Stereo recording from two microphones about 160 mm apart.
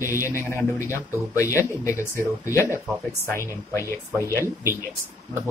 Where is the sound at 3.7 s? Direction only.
20° left (ahead or behind).